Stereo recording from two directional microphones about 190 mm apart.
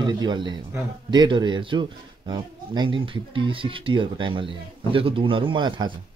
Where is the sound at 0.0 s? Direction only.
25° right (ahead or behind).